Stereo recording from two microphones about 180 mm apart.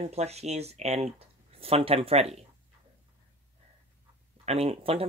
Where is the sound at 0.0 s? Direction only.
35° right (ahead or behind).